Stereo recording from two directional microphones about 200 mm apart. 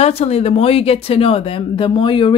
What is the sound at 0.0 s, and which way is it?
Speech, 30° left (ahead or behind).